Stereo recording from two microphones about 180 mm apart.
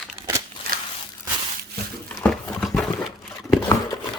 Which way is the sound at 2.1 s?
5° left (ahead or behind).